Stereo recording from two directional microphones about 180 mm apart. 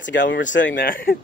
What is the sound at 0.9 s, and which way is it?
Speech, 50° left (ahead or behind).